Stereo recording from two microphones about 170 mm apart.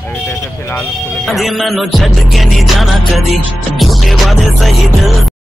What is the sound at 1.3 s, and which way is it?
Music, centre (ahead or behind).